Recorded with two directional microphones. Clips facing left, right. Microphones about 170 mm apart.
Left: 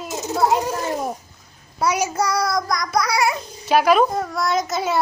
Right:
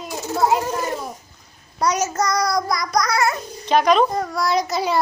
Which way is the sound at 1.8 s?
10° left (ahead or behind).